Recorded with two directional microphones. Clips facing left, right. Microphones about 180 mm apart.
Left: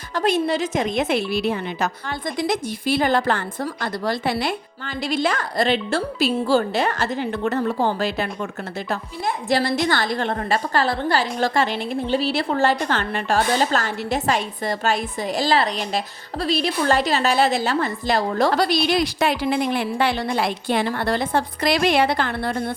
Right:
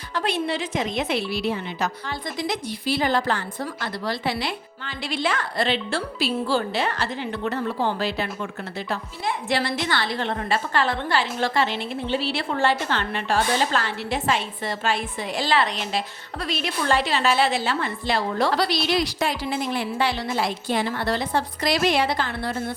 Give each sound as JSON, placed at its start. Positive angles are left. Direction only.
{"t": 0.1, "sound": "a woman's voice", "side_deg": 45}